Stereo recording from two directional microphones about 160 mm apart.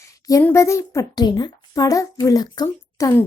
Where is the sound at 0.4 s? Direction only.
15° left (ahead or behind).